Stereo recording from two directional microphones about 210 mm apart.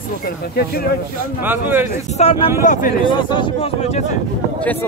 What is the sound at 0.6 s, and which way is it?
Speech, 45° left (ahead or behind).